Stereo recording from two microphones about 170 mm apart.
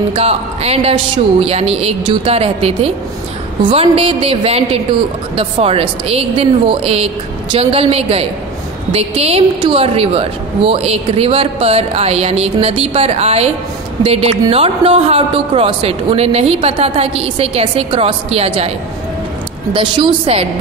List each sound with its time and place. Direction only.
0.1 s a woman's voice: 35° right (ahead or behind)
19.7 s a woman's voice: 30° right (ahead or behind)